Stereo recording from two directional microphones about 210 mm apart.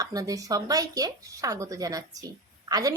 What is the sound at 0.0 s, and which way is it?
A woman's voice, 15° right (ahead or behind).